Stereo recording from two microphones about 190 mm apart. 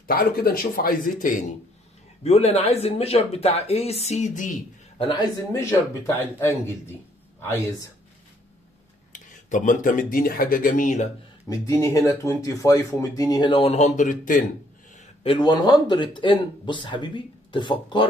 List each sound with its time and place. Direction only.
0.0 s speech: 50° left (ahead or behind)
2.2 s speech: 35° left (ahead or behind)
4.9 s speech: 25° left (ahead or behind)
9.1 s speech: 45° left (ahead or behind)
11.4 s speech: 15° left (ahead or behind); by 14.4 s 45° left (ahead or behind)
15.0 s speech: 25° left (ahead or behind)